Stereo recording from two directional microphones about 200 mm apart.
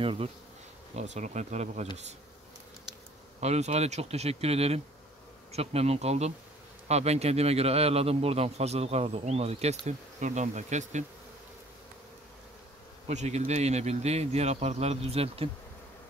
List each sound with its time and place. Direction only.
0.0 s a man's voice: 25° right (ahead or behind)
3.3 s a man's voice: 35° right (ahead or behind)
13.1 s a man's voice: 35° right (ahead or behind)